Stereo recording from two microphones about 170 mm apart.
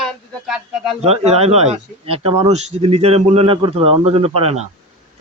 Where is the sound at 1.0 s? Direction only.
40° right (ahead or behind).